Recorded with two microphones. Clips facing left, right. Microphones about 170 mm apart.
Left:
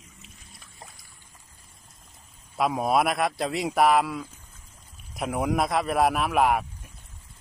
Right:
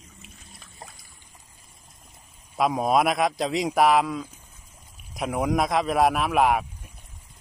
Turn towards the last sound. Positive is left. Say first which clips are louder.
# right 1 dB
turn(degrees=0)  # may be behind; listen again after turning